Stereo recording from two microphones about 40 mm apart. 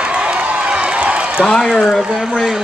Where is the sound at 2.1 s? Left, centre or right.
Centre.